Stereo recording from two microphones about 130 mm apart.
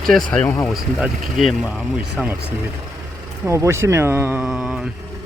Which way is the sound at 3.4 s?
20° right (ahead or behind).